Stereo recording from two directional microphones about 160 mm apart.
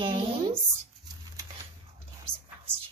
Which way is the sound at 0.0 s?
30° right (ahead or behind).